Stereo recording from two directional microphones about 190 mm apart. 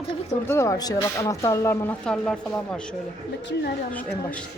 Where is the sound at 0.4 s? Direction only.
15° left (ahead or behind).